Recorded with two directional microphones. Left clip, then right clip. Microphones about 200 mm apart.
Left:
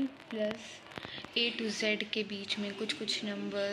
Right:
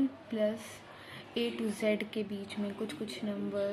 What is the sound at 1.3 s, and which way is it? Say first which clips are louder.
A woman's voice: left 2 dB; 5° right (ahead or behind).